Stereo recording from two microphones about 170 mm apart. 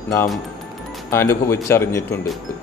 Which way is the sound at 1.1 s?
15° left (ahead or behind).